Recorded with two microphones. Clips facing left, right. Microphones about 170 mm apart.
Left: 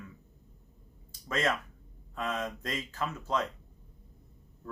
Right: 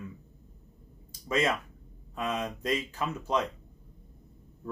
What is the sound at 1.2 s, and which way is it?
Speech, 15° right (ahead or behind).